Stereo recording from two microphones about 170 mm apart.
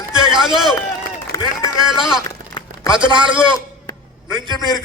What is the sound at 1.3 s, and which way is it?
Run, 20° left (ahead or behind).